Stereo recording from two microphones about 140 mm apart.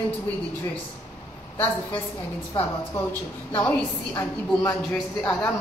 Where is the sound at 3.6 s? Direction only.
15° left (ahead or behind).